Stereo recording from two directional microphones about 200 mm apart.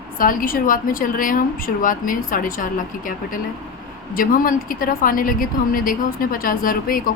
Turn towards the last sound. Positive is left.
turn(degrees=45)  # may be behind; listen again after turning